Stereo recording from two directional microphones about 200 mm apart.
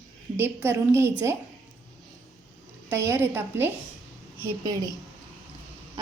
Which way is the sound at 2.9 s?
10° right (ahead or behind).